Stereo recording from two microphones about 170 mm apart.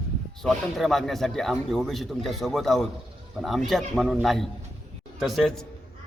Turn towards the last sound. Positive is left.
turn(degrees=0)  # may be behind; listen again after turning